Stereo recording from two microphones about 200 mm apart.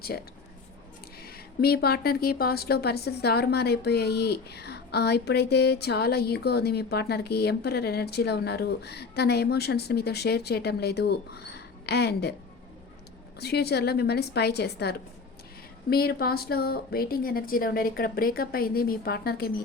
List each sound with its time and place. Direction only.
0.0 s speech: 50° left (ahead or behind)
13.4 s speech: 55° left (ahead or behind)